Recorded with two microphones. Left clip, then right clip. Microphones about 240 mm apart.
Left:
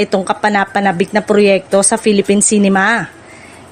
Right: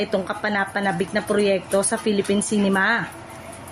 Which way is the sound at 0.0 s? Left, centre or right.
Left.